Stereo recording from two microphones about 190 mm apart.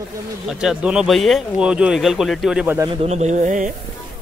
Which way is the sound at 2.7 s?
20° right (ahead or behind).